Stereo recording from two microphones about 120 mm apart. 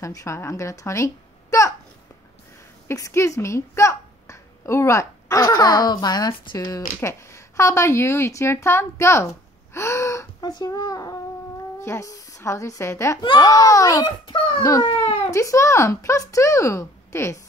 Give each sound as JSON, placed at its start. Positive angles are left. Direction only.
{"t": 0.0, "sound": "a woman's voice", "side_deg": 25}
{"t": 2.9, "sound": "a woman's voice", "side_deg": 25}
{"t": 7.0, "sound": "speech", "side_deg": 25}
{"t": 9.8, "sound": "gasp", "side_deg": 25}
{"t": 10.5, "sound": "a child's voice", "side_deg": 35}
{"t": 13.2, "sound": "a child's voice", "side_deg": 35}
{"t": 15.3, "sound": "speech", "side_deg": 25}